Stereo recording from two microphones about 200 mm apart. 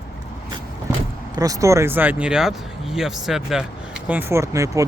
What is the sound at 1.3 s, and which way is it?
Speech, 15° right (ahead or behind).